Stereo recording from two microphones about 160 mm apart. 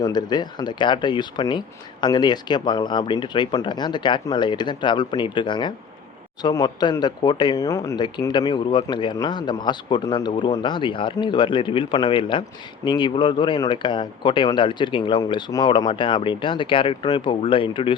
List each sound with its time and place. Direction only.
0.0 s speech: 25° left (ahead or behind)